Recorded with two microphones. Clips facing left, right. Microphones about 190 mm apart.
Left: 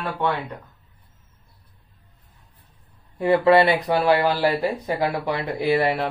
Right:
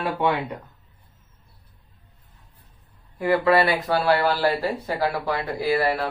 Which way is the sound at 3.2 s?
25° left (ahead or behind).